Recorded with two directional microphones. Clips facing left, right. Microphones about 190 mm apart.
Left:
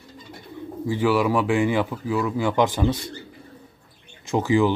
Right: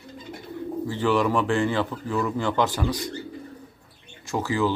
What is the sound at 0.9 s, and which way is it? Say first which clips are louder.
A man's voice: left 2 dB; 10° left (ahead or behind).